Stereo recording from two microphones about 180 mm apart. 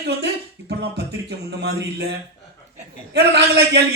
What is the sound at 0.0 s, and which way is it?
A man's voice, 70° right (ahead or behind).